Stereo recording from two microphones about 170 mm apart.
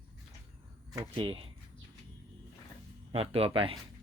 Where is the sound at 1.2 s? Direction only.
30° right (ahead or behind).